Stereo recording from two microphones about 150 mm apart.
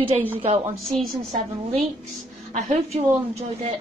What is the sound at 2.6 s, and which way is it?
A woman's voice, 45° right (ahead or behind).